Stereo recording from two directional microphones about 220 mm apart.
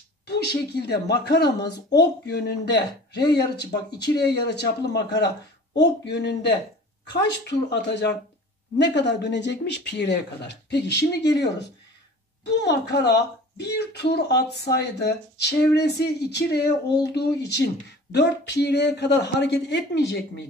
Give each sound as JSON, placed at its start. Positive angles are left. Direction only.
{"t": 0.3, "sound": "speech", "side_deg": 50}